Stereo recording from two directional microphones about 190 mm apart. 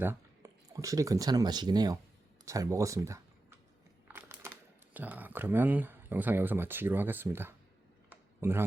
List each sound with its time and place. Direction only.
0.0 s speech: 15° right (ahead or behind)
4.1 s typing: 10° right (ahead or behind)
4.9 s speech: 10° right (ahead or behind)
8.1 s a sound: 10° right (ahead or behind)